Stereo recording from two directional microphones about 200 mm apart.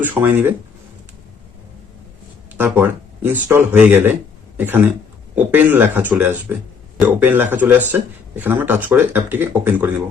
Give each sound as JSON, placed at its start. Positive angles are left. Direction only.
{"t": 0.0, "sound": "a man's voice", "side_deg": -10}
{"t": 2.6, "sound": "a man's voice", "side_deg": -10}